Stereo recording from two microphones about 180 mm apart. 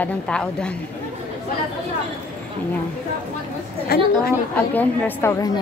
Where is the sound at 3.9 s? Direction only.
60° left (ahead or behind).